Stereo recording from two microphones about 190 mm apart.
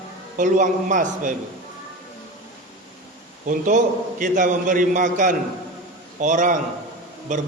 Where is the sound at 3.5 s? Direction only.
45° right (ahead or behind).